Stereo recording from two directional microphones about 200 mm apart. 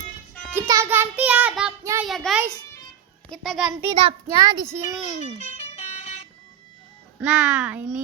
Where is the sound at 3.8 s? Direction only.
25° right (ahead or behind).